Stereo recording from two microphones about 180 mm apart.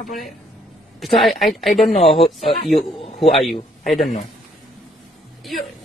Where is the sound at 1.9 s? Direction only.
35° left (ahead or behind).